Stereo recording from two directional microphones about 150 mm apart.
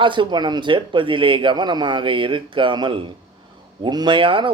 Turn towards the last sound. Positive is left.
turn(degrees=-35)  # may be behind; listen again after turning